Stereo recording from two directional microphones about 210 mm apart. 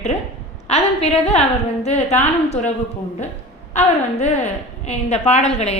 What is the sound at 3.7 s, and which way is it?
A woman's voice, 30° left (ahead or behind).